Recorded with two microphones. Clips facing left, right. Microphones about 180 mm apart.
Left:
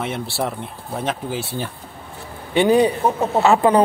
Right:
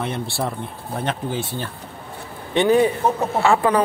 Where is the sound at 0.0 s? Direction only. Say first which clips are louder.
Left 1 dB; 5° left (ahead or behind).